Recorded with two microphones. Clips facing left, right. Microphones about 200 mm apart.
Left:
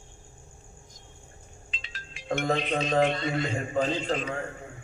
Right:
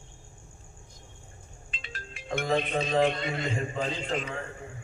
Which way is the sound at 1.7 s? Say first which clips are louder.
Right 5 dB; 50° right (ahead or behind).